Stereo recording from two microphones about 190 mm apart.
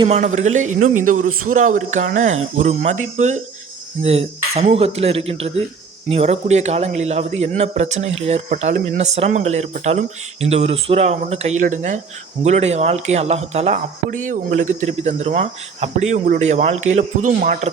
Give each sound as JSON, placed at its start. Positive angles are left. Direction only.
{"t": 0.1, "sound": "a man's voice", "side_deg": -40}